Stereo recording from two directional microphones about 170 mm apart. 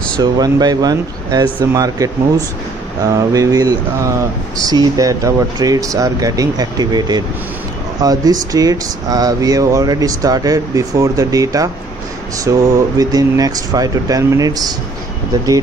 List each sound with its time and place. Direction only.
0.2 s speech: 25° right (ahead or behind)